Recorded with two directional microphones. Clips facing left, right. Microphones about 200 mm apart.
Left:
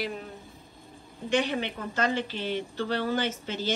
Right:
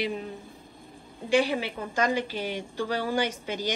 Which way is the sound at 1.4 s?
10° right (ahead or behind).